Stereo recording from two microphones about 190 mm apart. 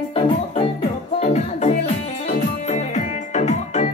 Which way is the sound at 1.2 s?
35° left (ahead or behind).